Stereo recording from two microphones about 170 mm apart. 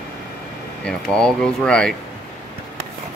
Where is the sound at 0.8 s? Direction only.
5° left (ahead or behind).